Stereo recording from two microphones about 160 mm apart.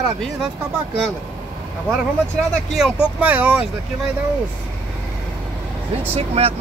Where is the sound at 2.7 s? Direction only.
Centre (ahead or behind).